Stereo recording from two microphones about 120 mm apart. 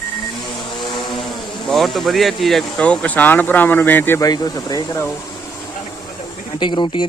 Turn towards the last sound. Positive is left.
turn(degrees=40)  # may be behind; listen again after turning